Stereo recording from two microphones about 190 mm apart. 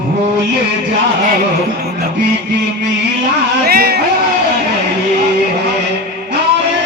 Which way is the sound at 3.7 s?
55° right (ahead or behind).